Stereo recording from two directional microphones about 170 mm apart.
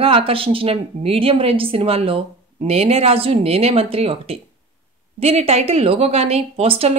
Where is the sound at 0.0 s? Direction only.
35° right (ahead or behind).